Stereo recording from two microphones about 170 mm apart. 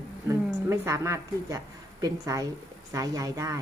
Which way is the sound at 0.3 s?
15° right (ahead or behind).